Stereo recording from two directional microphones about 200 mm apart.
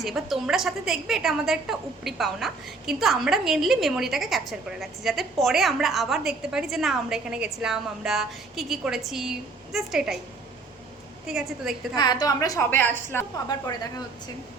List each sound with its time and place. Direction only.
0.0 s a woman's voice: centre (ahead or behind)
11.3 s a woman's voice: 5° right (ahead or behind)
11.9 s a woman's voice: 20° left (ahead or behind)